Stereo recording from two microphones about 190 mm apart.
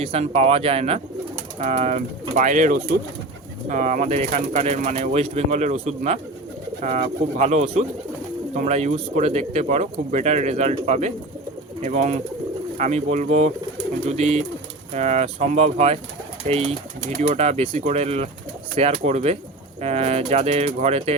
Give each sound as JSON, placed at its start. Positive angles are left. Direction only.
{"t": 0.0, "sound": "speech", "side_deg": -35}